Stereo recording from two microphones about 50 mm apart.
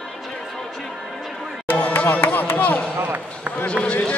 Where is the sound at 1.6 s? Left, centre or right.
Left.